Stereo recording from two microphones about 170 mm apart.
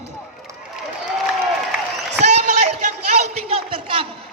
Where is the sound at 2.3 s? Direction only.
45° right (ahead or behind).